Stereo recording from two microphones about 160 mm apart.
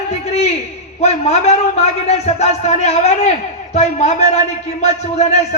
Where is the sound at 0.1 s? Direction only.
40° left (ahead or behind).